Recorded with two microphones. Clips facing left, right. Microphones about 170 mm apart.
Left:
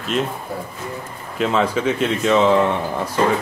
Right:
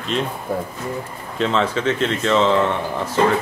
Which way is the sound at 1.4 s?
10° left (ahead or behind).